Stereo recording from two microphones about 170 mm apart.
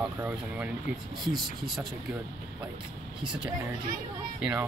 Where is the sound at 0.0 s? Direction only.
10° right (ahead or behind).